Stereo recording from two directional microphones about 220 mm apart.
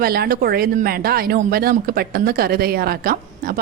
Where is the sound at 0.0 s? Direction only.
45° right (ahead or behind).